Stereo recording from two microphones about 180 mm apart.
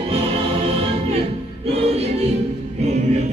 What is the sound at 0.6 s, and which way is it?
Music, 30° right (ahead or behind).